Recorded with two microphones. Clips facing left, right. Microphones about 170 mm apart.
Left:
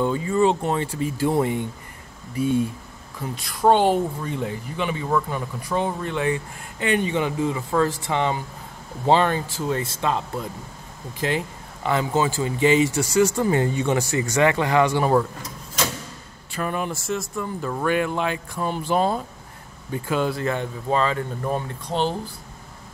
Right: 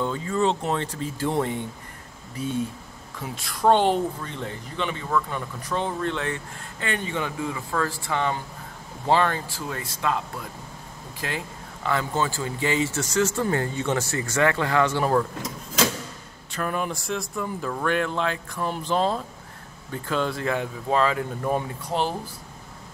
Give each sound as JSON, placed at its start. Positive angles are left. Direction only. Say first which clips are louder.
{"t": 0.0, "sound": "speech", "louder": "left 4 dB", "side_deg": 10}
{"t": 16.5, "sound": "speech", "louder": "left 1 dB", "side_deg": 0}